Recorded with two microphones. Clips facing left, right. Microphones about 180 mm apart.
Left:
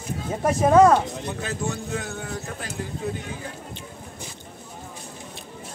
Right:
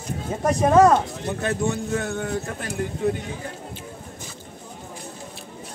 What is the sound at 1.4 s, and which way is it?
A man's voice, 55° right (ahead or behind).